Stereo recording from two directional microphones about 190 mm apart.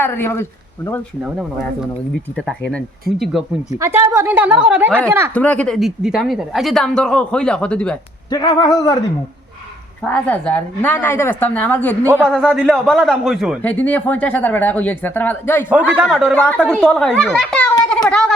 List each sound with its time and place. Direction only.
0.0 s speech: 10° left (ahead or behind)
1.2 s speech: centre (ahead or behind)
3.1 s speech: centre (ahead or behind)
3.8 s a woman's voice: 15° right (ahead or behind)
5.3 s speech: 5° left (ahead or behind)
8.3 s speech: 20° left (ahead or behind)
10.0 s speech: 5° left (ahead or behind)
13.6 s speech: 10° left (ahead or behind)
15.7 s speech: 5° right (ahead or behind)
18.1 s a sound: 5° left (ahead or behind)